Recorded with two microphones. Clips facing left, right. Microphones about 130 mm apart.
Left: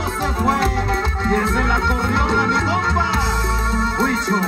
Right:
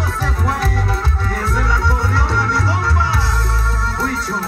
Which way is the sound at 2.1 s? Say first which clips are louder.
Left 1 dB; 20° left (ahead or behind).